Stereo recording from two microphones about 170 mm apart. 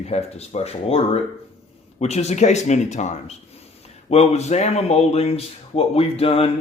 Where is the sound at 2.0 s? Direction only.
40° left (ahead or behind).